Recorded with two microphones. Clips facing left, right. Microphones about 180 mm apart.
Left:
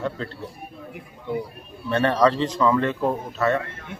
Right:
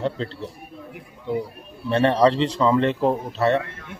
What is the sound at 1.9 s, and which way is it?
A man's voice, 25° right (ahead or behind).